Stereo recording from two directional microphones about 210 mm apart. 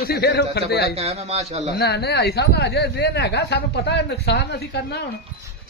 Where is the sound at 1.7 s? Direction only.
50° left (ahead or behind).